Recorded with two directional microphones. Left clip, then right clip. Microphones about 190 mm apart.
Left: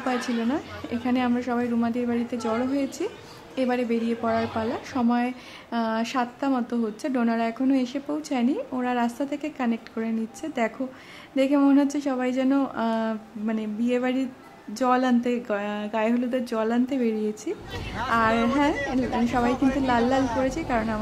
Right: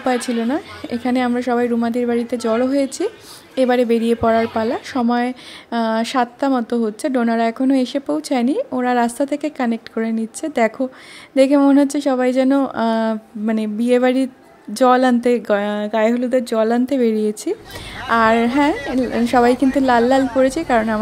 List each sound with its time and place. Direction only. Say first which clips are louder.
0.0 s speech: right 7 dB; 30° right (ahead or behind)